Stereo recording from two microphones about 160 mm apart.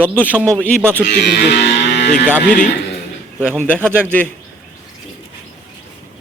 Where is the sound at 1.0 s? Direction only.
90° left.